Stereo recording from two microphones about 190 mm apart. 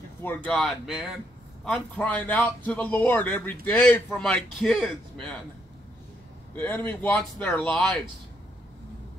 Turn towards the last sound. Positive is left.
turn(degrees=5)  # may be behind; listen again after turning